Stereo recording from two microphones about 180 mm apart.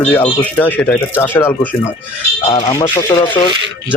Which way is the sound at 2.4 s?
30° left (ahead or behind).